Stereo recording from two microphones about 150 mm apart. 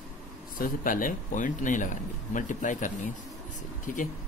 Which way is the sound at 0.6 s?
65° left (ahead or behind).